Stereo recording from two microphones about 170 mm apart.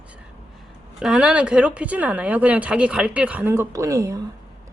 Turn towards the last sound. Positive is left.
turn(degrees=-20)  # may be behind; listen again after turning